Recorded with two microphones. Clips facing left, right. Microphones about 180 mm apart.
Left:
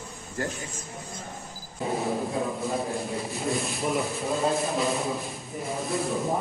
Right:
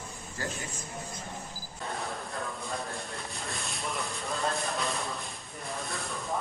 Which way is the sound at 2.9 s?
Centre (ahead or behind).